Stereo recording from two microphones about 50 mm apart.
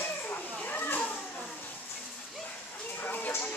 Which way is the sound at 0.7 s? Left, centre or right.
Left.